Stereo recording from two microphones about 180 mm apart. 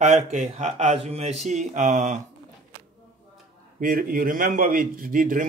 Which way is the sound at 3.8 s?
50° right (ahead or behind).